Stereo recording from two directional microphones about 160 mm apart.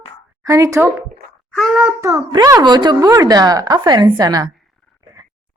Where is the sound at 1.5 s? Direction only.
Centre (ahead or behind).